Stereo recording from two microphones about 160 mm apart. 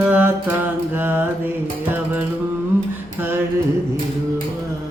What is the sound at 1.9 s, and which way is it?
Music, 10° right (ahead or behind).